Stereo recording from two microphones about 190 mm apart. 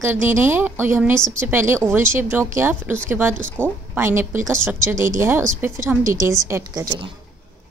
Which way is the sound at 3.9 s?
10° right (ahead or behind).